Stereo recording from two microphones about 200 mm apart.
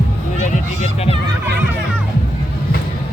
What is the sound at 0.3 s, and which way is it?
Music, 35° left (ahead or behind).